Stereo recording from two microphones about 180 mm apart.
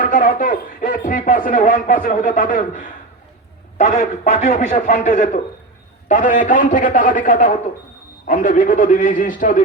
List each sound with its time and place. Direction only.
0.0 s speech: 45° left (ahead or behind)